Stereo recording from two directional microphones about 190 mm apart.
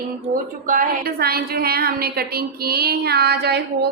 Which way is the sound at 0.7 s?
50° right (ahead or behind).